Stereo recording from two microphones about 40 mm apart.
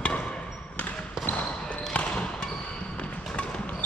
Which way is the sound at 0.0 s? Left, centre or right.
Left.